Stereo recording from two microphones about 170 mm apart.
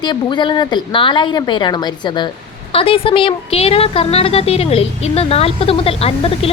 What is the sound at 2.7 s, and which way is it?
A woman's voice, 35° left (ahead or behind).